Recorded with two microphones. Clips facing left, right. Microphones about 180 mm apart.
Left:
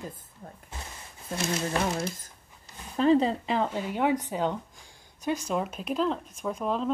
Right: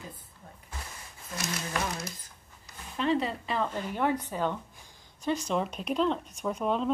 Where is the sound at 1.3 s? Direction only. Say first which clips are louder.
Left 6 dB; 30° left (ahead or behind).